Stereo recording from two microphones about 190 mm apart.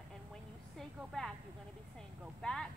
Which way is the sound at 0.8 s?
Centre (ahead or behind).